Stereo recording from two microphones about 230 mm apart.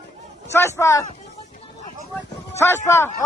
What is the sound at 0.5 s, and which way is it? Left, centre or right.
Speech, centre.